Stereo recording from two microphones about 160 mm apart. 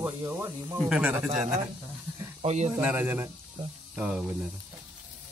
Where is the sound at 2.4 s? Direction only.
45° right (ahead or behind).